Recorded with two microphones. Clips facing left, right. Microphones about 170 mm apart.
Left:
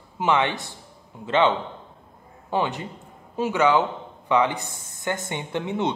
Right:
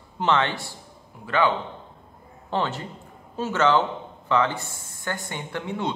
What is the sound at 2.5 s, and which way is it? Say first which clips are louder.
A man's voice: left 2 dB; 15° left (ahead or behind).